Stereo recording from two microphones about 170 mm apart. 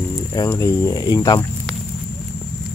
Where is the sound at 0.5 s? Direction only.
20° left (ahead or behind).